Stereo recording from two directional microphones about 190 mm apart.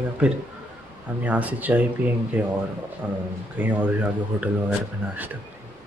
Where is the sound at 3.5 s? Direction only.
10° right (ahead or behind).